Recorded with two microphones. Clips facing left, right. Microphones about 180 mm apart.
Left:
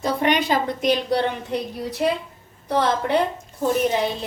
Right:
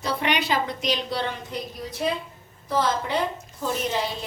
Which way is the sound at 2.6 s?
65° left (ahead or behind).